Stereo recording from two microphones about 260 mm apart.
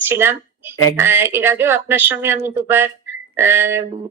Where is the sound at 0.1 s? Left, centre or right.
Centre.